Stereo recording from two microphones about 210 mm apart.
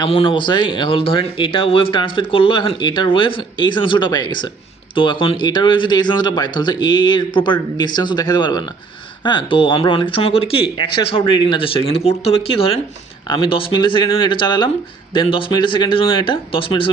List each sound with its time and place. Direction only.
0.0 s speech: 25° left (ahead or behind)